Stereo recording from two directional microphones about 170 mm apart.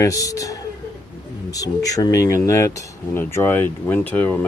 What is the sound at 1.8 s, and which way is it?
Speech, 20° left (ahead or behind).